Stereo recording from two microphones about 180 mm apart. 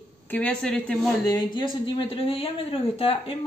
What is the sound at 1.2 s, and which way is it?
Speech, 25° left (ahead or behind).